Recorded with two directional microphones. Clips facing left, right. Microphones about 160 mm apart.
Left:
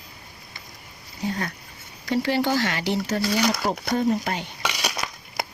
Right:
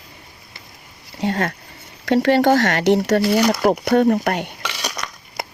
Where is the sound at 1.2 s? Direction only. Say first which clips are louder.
Right 7 dB; 85° right.